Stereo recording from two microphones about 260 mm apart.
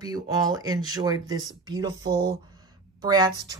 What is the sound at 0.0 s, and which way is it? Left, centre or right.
Speech, centre.